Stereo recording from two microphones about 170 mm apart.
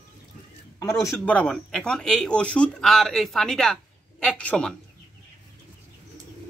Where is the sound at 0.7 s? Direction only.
20° left (ahead or behind).